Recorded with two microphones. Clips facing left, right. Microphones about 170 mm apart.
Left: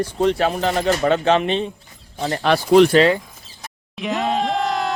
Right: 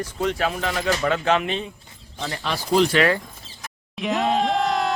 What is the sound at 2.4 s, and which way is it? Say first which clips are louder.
Speech: left 7 dB; 65° left (ahead or behind).